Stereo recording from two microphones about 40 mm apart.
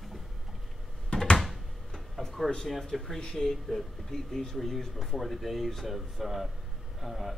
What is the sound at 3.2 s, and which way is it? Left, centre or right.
Speech, centre.